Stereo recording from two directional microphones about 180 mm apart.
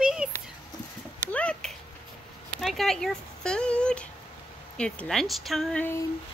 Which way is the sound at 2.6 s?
Centre (ahead or behind).